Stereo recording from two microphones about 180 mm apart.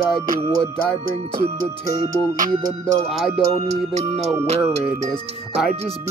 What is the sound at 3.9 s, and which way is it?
Speech, 35° right (ahead or behind).